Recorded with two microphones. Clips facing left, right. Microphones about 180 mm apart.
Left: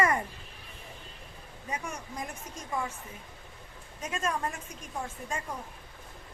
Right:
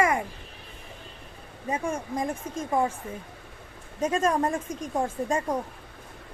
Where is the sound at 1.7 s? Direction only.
30° right (ahead or behind).